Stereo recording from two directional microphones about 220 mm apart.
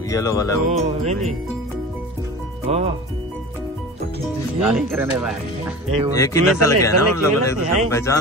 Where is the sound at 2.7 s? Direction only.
25° right (ahead or behind).